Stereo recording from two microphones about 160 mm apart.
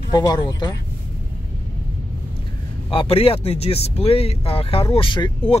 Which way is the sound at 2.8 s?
35° left (ahead or behind).